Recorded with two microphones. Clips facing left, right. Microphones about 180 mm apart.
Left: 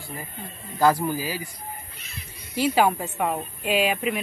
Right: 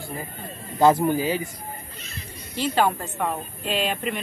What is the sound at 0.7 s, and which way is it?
Speech, 25° right (ahead or behind).